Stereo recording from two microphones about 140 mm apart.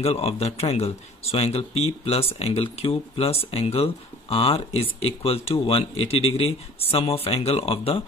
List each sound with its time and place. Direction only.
0.0 s speech: 45° left (ahead or behind)